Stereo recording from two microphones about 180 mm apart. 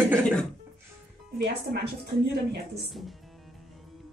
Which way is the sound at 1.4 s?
65° right (ahead or behind).